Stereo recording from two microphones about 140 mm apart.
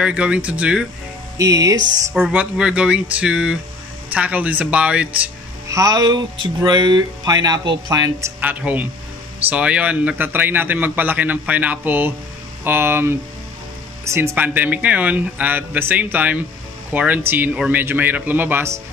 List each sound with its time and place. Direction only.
0.0 s a man's voice: 5° right (ahead or behind)
1.4 s speech: 25° right (ahead or behind)
2.1 s a man's voice: 5° right (ahead or behind)
5.7 s speech: 25° right (ahead or behind)
8.4 s a man's voice: 10° right (ahead or behind)